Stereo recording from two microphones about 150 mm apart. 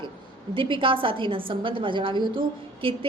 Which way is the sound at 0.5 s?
35° right (ahead or behind).